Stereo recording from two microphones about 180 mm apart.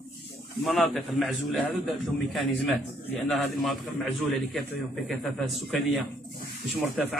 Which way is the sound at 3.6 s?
Centre (ahead or behind).